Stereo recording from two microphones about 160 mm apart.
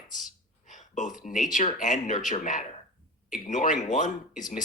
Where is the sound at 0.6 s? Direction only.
50° left (ahead or behind).